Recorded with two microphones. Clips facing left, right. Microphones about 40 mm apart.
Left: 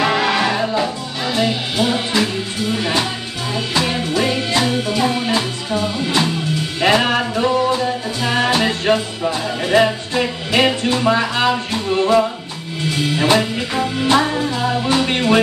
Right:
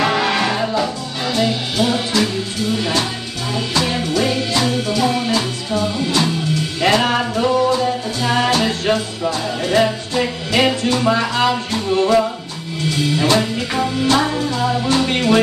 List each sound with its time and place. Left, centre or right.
0.0 s music: centre
1.3 s speech: centre
2.7 s music: left
14.0 s music: centre